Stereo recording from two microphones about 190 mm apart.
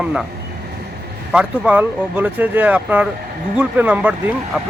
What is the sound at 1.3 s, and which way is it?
Speech, 5° right (ahead or behind).